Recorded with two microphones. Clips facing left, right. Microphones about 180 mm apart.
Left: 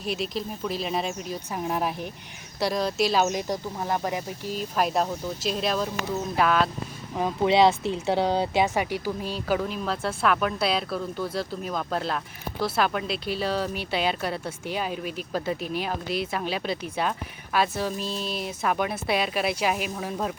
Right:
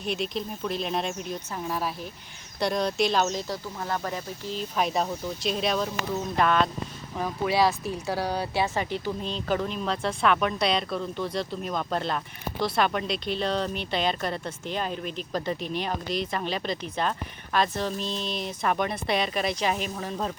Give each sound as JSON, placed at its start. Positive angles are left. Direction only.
{"t": 0.0, "sound": "speech", "side_deg": 0}
{"t": 1.5, "sound": "speech", "side_deg": 20}
{"t": 2.6, "sound": "speech", "side_deg": 0}
{"t": 3.2, "sound": "speech", "side_deg": 15}
{"t": 7.2, "sound": "speech", "side_deg": 20}